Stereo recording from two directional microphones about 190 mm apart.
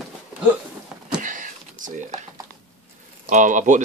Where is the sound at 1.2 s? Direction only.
45° right (ahead or behind).